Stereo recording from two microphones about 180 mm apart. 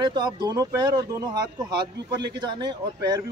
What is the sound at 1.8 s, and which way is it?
Speech, 70° right (ahead or behind).